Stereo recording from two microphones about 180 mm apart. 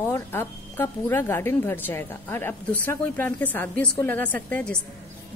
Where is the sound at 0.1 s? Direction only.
15° left (ahead or behind).